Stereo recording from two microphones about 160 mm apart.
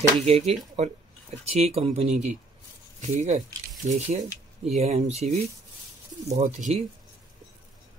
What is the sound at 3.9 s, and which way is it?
Speech, 45° right (ahead or behind).